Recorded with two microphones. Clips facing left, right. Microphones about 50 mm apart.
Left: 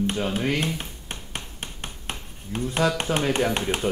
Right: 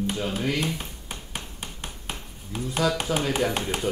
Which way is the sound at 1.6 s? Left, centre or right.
Left.